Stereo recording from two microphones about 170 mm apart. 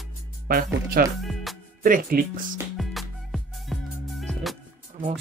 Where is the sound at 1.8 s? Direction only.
55° right (ahead or behind).